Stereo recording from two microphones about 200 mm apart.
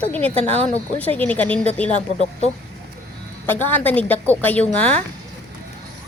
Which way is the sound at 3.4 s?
10° left (ahead or behind).